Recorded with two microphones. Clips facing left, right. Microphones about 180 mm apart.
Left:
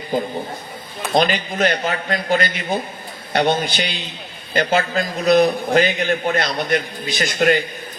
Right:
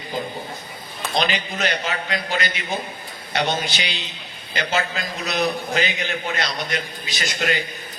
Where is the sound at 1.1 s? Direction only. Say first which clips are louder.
Left 6 dB; 50° left (ahead or behind).